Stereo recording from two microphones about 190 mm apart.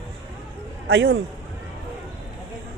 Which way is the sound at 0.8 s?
90° right.